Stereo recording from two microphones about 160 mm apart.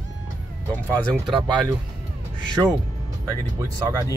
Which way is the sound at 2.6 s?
20° right (ahead or behind).